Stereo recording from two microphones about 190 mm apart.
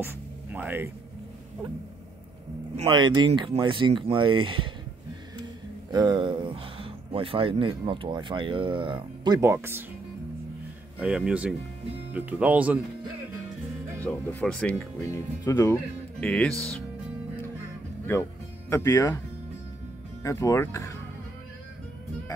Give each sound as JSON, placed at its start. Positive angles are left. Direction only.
{"t": 0.0, "sound": "speech", "side_deg": -10}
{"t": 2.7, "sound": "speech", "side_deg": -30}
{"t": 5.9, "sound": "speech", "side_deg": -20}
{"t": 11.0, "sound": "speech", "side_deg": -5}
{"t": 13.9, "sound": "speech", "side_deg": 10}
{"t": 15.0, "sound": "speech", "side_deg": 15}
{"t": 16.2, "sound": "speech", "side_deg": 5}
{"t": 18.7, "sound": "speech", "side_deg": 15}
{"t": 20.2, "sound": "speech", "side_deg": 15}